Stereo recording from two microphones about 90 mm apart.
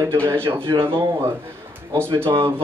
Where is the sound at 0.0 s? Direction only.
30° right (ahead or behind).